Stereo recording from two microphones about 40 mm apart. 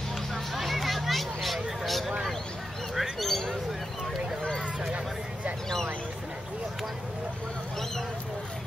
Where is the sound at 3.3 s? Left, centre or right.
Centre.